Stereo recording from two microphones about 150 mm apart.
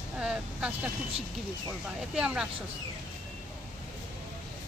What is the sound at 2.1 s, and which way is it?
Speech, 5° right (ahead or behind).